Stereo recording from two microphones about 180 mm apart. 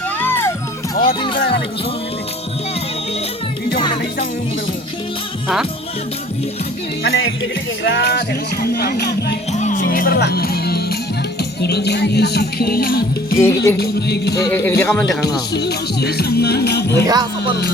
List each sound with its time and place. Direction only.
0.2 s music: 10° left (ahead or behind)
1.4 s music: 65° left (ahead or behind)
7.0 s music: 90° left
7.9 s music: 75° left (ahead or behind)
8.6 s music: 55° left (ahead or behind)
9.5 s music: 40° left (ahead or behind)
13.4 s a man's voice: 15° left (ahead or behind)
13.7 s music: 65° left (ahead or behind)
14.5 s a man's voice: 10° left (ahead or behind)
15.5 s music: 65° left (ahead or behind)
17.1 s music: 25° right (ahead or behind)